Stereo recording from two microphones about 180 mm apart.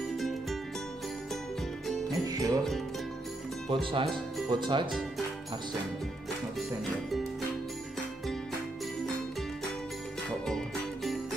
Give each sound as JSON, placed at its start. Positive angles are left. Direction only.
{"t": 2.0, "sound": "music", "side_deg": -20}
{"t": 3.6, "sound": "speech", "side_deg": -30}